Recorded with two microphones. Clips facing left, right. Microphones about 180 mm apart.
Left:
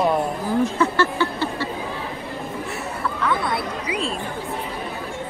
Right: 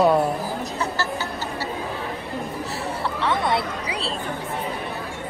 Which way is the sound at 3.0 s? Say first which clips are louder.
Left 1 dB; 25° right (ahead or behind).